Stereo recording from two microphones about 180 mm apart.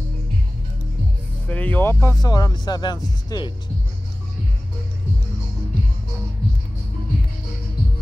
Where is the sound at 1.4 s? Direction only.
10° left (ahead or behind).